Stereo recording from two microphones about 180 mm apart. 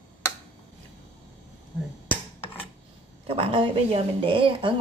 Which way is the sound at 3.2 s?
30° right (ahead or behind).